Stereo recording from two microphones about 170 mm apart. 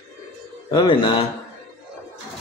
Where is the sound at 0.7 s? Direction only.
30° left (ahead or behind).